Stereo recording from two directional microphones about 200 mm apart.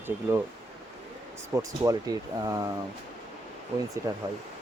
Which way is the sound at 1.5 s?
15° right (ahead or behind).